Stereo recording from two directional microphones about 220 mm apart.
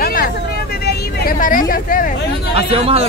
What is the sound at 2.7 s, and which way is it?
Speech, 25° right (ahead or behind).